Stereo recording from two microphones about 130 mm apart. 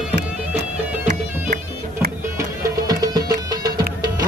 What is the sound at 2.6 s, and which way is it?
Music, 30° right (ahead or behind).